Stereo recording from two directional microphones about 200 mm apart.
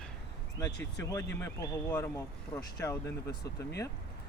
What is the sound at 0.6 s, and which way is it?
Speech, 15° left (ahead or behind).